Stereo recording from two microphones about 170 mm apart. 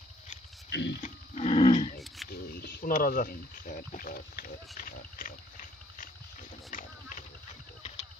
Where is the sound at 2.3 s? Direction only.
65° left (ahead or behind).